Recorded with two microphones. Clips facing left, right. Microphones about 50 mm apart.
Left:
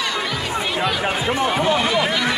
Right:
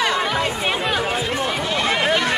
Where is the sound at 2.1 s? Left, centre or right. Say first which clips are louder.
Right 2 dB; right.